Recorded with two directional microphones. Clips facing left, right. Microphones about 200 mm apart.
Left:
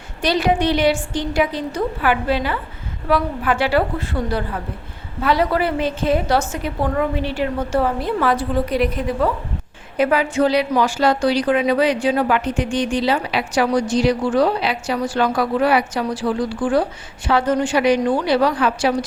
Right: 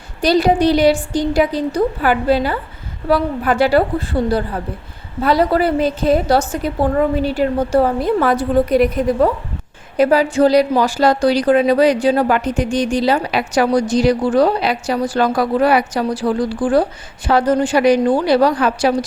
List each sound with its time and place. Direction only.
0.2 s a woman's voice: 35° right (ahead or behind)